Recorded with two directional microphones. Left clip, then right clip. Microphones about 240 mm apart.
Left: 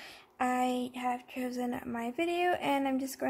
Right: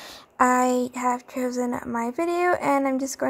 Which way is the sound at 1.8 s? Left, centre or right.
Centre.